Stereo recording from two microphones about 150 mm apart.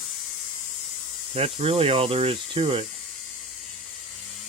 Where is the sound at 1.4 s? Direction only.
40° right (ahead or behind).